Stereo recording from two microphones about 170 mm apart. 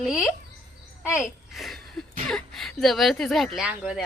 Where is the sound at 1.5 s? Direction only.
Centre (ahead or behind).